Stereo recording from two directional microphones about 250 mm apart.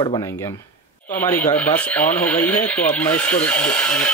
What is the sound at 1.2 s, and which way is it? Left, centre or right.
Speech, centre.